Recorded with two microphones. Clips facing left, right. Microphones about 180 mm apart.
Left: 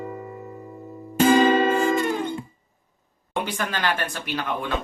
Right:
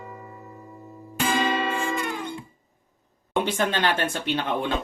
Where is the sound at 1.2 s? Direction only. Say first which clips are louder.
Left 8 dB; 40° left (ahead or behind).